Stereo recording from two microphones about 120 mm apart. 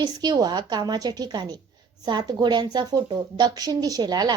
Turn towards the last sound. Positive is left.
turn(degrees=-35)  # may be behind; listen again after turning